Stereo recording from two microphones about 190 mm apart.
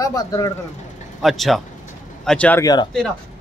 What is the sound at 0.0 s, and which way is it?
Speech, 15° left (ahead or behind).